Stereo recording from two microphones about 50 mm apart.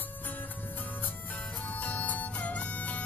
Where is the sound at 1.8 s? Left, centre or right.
Left.